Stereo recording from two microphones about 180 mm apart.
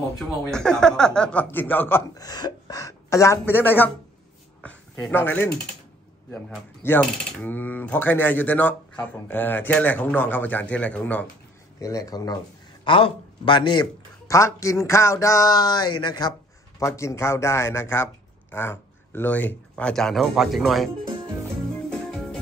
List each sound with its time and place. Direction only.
0.4 s a man's voice: 5° left (ahead or behind)
4.6 s a sound: 5° left (ahead or behind)
6.3 s a man's voice: 10° left (ahead or behind)
11.8 s a man's voice: 20° left (ahead or behind); by 20.9 s centre (ahead or behind)
22.1 s music: 5° left (ahead or behind)